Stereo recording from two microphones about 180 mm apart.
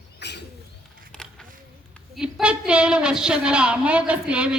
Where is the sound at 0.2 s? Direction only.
70° left (ahead or behind).